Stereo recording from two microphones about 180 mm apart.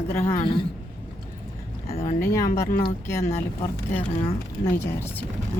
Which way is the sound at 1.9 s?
40° left (ahead or behind).